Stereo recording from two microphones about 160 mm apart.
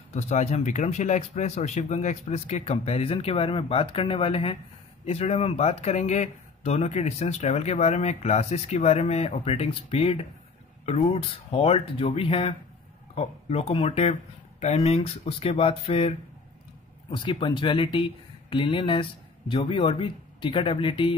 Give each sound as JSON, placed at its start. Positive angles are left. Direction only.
{"t": 0.1, "sound": "speech", "side_deg": 45}